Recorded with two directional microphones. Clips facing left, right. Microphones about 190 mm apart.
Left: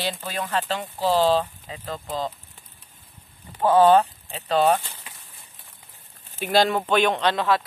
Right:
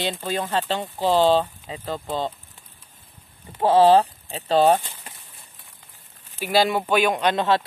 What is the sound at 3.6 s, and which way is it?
Speech, 30° right (ahead or behind).